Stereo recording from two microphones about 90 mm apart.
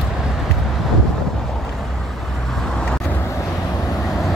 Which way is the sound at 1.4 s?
5° left (ahead or behind).